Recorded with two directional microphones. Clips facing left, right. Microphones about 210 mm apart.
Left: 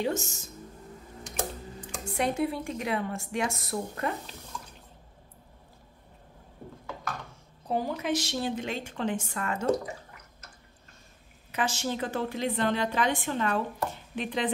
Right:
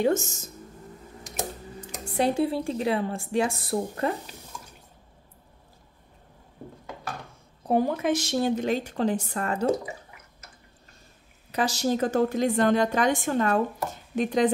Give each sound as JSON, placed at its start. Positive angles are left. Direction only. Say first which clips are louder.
{"t": 0.0, "sound": "a woman's voice", "louder": "right 6 dB", "side_deg": -45}
{"t": 2.1, "sound": "a woman's voice", "louder": "right 4 dB", "side_deg": -30}
{"t": 7.6, "sound": "a woman's voice", "louder": "right 6 dB", "side_deg": -55}
{"t": 11.5, "sound": "a woman's voice", "louder": "right 5 dB", "side_deg": -40}